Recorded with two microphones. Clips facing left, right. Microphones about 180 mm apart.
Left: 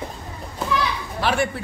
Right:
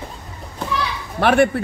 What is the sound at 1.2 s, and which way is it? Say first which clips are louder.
Speech: right 8 dB; 60° right (ahead or behind).